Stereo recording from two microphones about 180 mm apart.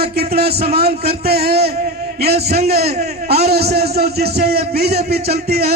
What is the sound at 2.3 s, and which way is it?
Speech, 35° right (ahead or behind).